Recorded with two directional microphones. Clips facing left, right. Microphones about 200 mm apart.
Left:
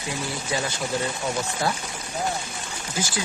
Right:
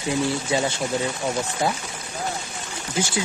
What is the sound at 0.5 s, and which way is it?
Speech, 25° right (ahead or behind).